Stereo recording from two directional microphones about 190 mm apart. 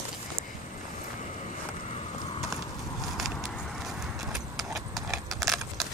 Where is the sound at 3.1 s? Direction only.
Centre (ahead or behind).